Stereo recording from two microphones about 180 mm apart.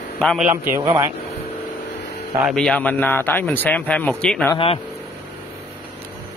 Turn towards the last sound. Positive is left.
turn(degrees=30)  # may be behind; listen again after turning